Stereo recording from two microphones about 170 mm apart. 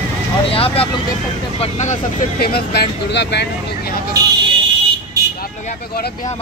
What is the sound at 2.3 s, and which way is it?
Speech, 65° left (ahead or behind).